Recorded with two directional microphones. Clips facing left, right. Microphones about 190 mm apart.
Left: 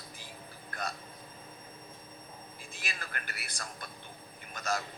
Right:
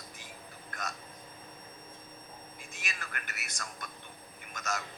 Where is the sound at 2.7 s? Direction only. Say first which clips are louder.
Left 1 dB; 30° left (ahead or behind).